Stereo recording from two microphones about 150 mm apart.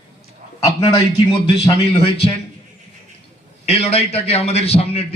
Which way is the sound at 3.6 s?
40° left (ahead or behind).